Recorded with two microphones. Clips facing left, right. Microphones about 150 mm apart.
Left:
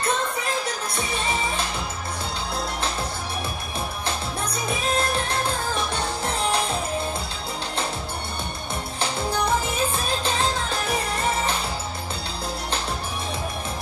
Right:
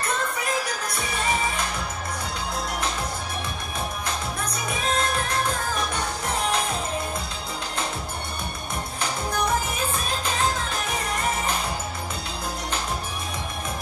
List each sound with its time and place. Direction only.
0.9 s music: 25° left (ahead or behind)
4.5 s music: 30° left (ahead or behind)
9.8 s music: 30° left (ahead or behind)